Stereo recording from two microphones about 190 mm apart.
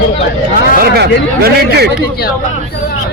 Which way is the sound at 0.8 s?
55° right (ahead or behind).